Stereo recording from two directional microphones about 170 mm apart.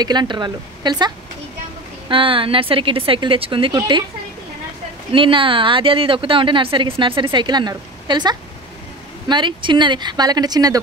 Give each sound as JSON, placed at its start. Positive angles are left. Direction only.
{"t": 0.0, "sound": "a woman's voice", "side_deg": -25}
{"t": 5.1, "sound": "a woman's voice", "side_deg": -30}